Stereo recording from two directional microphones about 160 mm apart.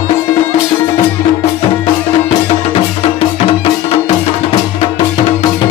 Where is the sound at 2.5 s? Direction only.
40° left (ahead or behind).